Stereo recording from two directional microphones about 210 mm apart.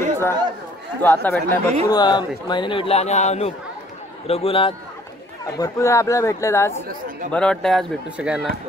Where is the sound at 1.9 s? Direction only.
20° left (ahead or behind).